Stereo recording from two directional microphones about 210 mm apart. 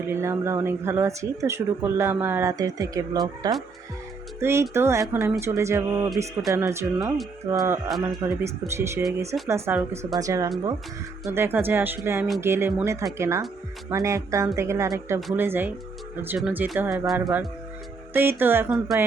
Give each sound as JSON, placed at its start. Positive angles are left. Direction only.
{"t": 0.1, "sound": "speech", "side_deg": -10}